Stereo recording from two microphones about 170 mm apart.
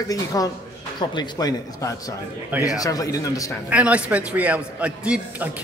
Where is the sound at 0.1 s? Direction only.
20° left (ahead or behind).